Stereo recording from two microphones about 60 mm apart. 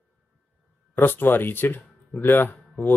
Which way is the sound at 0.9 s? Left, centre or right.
Left.